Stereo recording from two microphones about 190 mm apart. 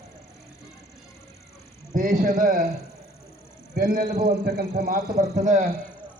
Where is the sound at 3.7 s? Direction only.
50° right (ahead or behind).